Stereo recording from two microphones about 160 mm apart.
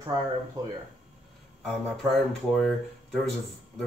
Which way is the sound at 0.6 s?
20° right (ahead or behind).